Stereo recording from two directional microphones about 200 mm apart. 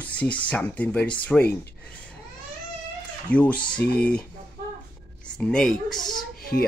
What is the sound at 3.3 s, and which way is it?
Speech, 5° left (ahead or behind).